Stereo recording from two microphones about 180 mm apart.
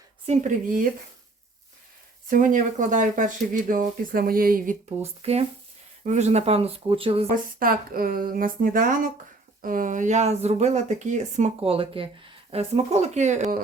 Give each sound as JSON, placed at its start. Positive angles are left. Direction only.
{"t": 0.3, "sound": "speech", "side_deg": -45}
{"t": 2.3, "sound": "speech", "side_deg": -45}
{"t": 7.6, "sound": "speech", "side_deg": -55}